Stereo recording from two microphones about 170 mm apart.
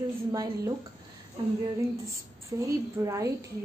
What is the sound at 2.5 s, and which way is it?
Speech, 25° right (ahead or behind).